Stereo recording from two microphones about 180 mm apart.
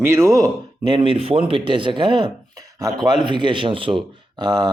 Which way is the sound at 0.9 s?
30° right (ahead or behind).